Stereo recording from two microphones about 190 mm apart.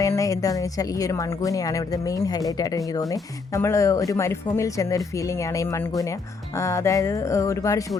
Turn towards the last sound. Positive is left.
turn(degrees=15)  # may be behind; listen again after turning